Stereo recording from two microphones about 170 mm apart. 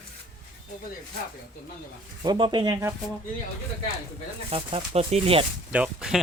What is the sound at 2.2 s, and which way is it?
Speech, 25° right (ahead or behind).